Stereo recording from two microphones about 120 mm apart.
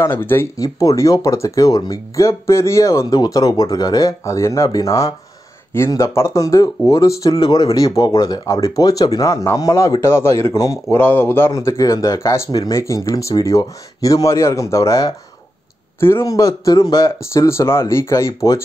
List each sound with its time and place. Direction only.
0.0 s speech: 20° left (ahead or behind)